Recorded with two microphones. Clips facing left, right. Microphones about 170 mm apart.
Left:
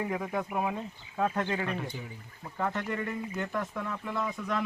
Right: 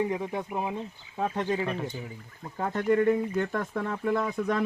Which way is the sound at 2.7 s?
45° right (ahead or behind).